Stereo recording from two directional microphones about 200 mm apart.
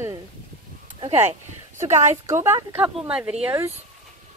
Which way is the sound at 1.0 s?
30° right (ahead or behind).